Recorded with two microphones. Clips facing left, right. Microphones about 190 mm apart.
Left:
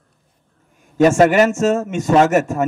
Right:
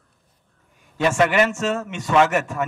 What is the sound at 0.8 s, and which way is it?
A man's voice, 45° left (ahead or behind).